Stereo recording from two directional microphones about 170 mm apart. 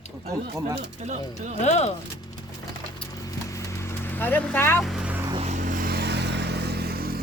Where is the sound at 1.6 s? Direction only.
40° left (ahead or behind).